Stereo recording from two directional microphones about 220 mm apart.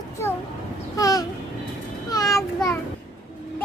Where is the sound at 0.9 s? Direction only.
15° left (ahead or behind).